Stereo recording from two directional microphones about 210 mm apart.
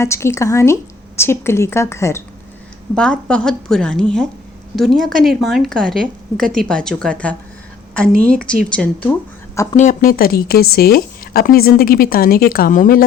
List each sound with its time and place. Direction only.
0.0 s a woman's voice: 15° left (ahead or behind)
8.7 s a woman's voice: 5° left (ahead or behind)
9.7 s speech: 40° left (ahead or behind)